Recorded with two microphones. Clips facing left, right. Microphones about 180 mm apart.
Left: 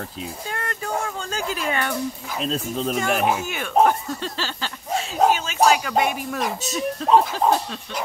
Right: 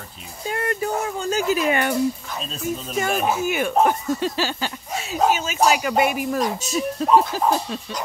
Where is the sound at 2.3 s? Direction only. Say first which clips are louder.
Left 2 dB; 90° left.